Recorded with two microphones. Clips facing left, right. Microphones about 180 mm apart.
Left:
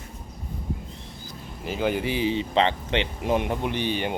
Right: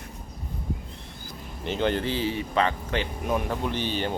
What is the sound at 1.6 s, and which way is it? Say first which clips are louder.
Speech: even; 5° left (ahead or behind).